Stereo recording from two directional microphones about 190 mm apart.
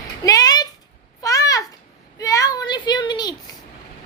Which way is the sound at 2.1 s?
15° left (ahead or behind).